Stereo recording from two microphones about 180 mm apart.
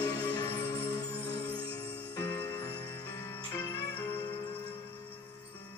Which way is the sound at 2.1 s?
15° left (ahead or behind).